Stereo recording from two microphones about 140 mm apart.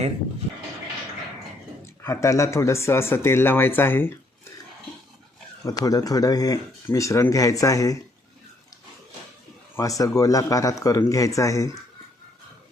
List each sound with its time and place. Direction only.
2.0 s speech: 20° left (ahead or behind)
5.6 s speech: 25° left (ahead or behind)
9.7 s speech: 25° left (ahead or behind)